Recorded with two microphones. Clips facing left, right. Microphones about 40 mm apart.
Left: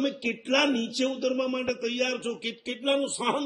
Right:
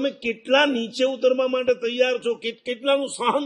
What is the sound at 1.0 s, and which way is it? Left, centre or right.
A man's voice, right.